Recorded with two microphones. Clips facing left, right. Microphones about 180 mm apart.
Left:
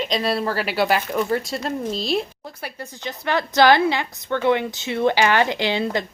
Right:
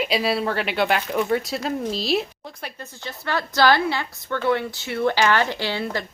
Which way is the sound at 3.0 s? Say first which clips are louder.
Left 3 dB; 20° left (ahead or behind).